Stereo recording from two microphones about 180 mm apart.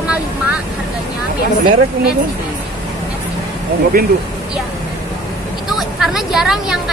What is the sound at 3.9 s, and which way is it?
Speech, 55° right (ahead or behind).